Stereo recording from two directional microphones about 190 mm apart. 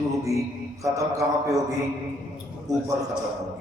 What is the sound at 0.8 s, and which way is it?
Speech, 15° right (ahead or behind).